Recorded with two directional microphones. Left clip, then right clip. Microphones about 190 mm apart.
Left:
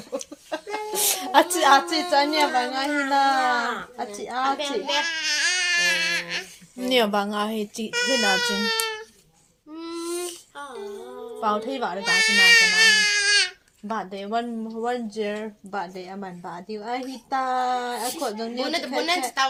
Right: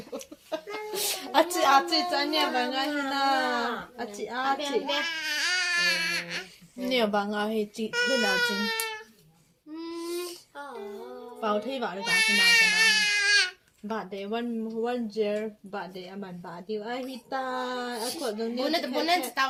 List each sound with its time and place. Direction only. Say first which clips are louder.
0.9 s a woman's voice: left 6 dB; 40° left (ahead or behind)
4.5 s speech: left 3 dB; 5° left (ahead or behind)
6.8 s a woman's voice: left 5 dB; 35° left (ahead or behind)
7.9 s speech: left 4 dB; 5° left (ahead or behind)
9.7 s a sound: left 3 dB; 15° left (ahead or behind)
11.3 s a woman's voice: left 4 dB; 35° left (ahead or behind)
11.9 s baby cry: left 5 dB; centre (ahead or behind)
13.8 s a woman's voice: left 4 dB; 35° left (ahead or behind)
18.7 s speech: left 2 dB; 5° left (ahead or behind)